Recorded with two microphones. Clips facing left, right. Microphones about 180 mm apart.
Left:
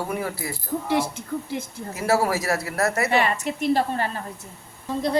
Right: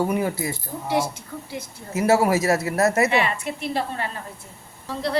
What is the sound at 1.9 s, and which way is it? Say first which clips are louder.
Speech: right 4 dB; 20° right (ahead or behind).